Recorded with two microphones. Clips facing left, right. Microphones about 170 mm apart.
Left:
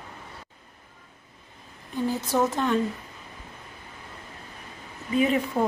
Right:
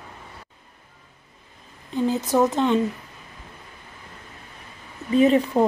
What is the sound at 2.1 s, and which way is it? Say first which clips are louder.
Speech: right 4 dB; 20° right (ahead or behind).